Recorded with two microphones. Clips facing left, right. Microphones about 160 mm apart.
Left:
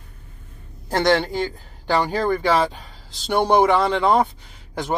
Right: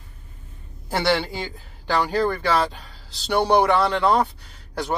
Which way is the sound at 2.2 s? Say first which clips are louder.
Left 2 dB; 15° left (ahead or behind).